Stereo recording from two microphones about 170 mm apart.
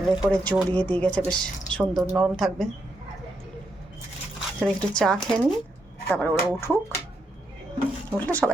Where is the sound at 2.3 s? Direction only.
Centre (ahead or behind).